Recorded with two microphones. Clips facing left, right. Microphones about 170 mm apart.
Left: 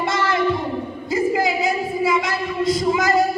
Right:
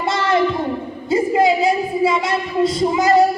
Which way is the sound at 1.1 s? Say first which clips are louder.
Right 4 dB; 30° right (ahead or behind).